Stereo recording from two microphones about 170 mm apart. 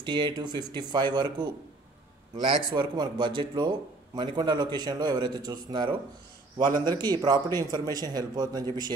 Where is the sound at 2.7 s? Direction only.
25° right (ahead or behind).